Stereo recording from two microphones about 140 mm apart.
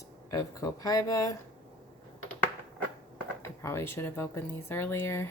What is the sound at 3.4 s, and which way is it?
Speech, 20° left (ahead or behind).